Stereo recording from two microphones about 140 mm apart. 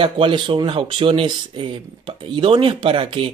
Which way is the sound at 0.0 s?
40° right (ahead or behind).